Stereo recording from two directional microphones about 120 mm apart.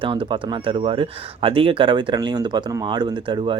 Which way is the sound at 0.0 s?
45° right (ahead or behind).